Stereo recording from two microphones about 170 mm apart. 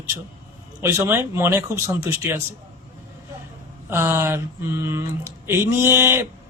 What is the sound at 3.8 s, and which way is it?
A man's voice, 15° right (ahead or behind).